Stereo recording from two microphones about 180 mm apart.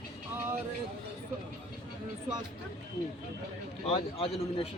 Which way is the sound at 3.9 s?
30° left (ahead or behind).